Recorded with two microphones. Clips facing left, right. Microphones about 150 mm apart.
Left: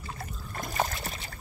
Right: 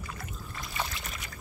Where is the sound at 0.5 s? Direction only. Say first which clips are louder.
Left 6 dB; 45° left (ahead or behind).